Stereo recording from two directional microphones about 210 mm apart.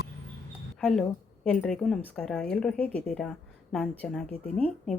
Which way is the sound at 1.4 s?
5° left (ahead or behind).